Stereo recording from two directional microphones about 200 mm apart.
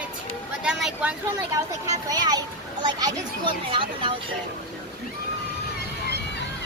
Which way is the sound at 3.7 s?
25° right (ahead or behind).